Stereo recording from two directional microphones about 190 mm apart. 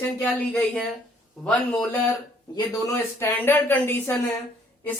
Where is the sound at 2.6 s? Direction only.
15° left (ahead or behind).